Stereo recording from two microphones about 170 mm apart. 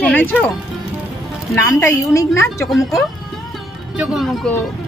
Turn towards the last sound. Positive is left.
turn(degrees=0)  # may be behind; listen again after turning